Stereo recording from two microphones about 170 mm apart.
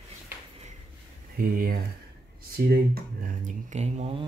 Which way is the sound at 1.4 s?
60° right (ahead or behind).